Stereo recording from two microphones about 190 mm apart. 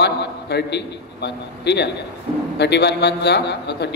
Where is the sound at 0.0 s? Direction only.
60° left (ahead or behind).